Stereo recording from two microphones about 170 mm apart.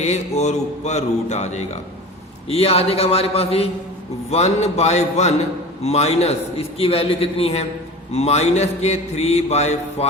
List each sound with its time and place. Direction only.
0.0 s mantra: 40° left (ahead or behind)